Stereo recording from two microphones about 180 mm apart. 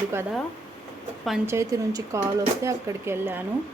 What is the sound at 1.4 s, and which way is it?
Speech, 15° right (ahead or behind).